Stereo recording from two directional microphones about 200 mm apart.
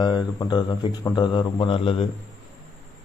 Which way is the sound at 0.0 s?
20° left (ahead or behind).